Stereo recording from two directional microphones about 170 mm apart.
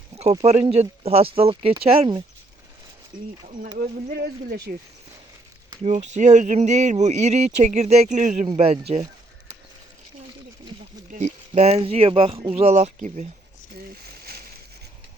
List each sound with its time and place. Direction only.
0.2 s speech: 40° right (ahead or behind)
4.1 s speech: 70° right (ahead or behind)
5.8 s speech: 45° right (ahead or behind)
11.1 s speech: 40° right (ahead or behind)
13.7 s a sound: 65° right (ahead or behind)